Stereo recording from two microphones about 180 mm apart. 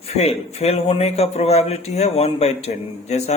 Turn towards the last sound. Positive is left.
turn(degrees=35)  # may be behind; listen again after turning